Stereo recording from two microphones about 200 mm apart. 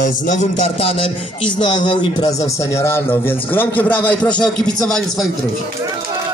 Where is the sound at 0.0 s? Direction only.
40° left (ahead or behind).